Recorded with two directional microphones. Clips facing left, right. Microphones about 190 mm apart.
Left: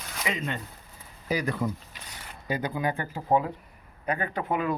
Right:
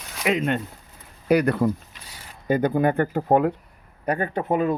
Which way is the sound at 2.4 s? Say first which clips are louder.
Right 9 dB; 55° right (ahead or behind).